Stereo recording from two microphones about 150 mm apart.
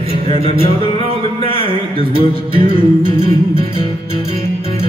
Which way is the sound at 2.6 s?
40° left (ahead or behind).